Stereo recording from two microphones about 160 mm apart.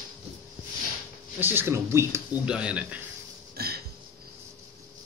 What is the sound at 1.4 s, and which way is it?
Speech, 15° right (ahead or behind).